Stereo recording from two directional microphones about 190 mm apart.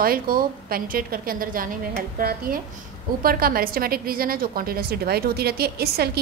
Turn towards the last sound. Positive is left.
turn(degrees=-55)  # may be behind; listen again after turning